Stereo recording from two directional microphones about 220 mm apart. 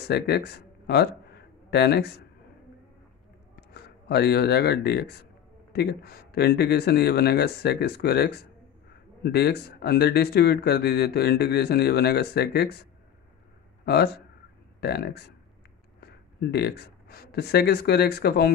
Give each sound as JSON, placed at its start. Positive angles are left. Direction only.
{"t": 0.1, "sound": "speech", "side_deg": 45}
{"t": 3.5, "sound": "speech", "side_deg": 45}
{"t": 13.8, "sound": "speech", "side_deg": 45}